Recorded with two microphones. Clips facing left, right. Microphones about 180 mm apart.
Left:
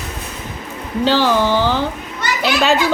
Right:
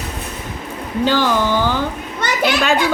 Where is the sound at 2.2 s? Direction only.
50° right (ahead or behind).